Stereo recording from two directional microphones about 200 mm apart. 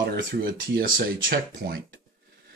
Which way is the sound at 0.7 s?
45° right (ahead or behind).